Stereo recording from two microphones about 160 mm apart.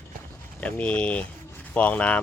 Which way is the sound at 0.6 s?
10° left (ahead or behind).